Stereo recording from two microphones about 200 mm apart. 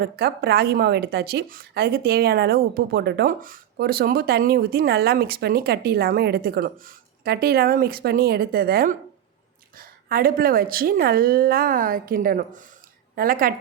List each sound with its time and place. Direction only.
0.0 s speech: 50° right (ahead or behind)